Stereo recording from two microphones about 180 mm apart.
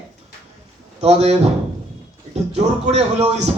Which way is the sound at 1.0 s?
35° right (ahead or behind).